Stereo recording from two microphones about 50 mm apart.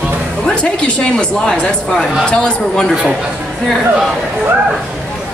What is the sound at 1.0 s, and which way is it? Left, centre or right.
A woman's voice, centre.